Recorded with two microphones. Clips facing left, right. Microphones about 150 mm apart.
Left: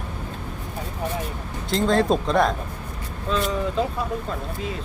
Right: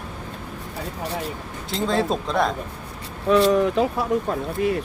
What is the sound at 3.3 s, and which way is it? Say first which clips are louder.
Speech: right 7 dB; 75° right (ahead or behind).